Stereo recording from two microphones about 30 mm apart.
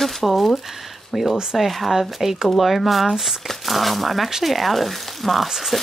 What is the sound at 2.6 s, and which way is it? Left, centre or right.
Speech, centre.